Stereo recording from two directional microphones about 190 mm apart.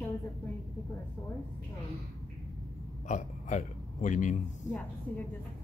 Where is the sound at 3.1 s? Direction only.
40° left (ahead or behind).